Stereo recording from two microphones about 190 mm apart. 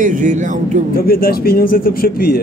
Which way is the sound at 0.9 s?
50° left (ahead or behind).